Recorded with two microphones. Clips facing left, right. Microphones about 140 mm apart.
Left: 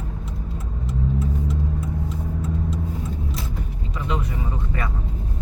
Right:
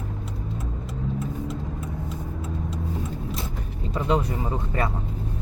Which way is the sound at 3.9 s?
35° right (ahead or behind).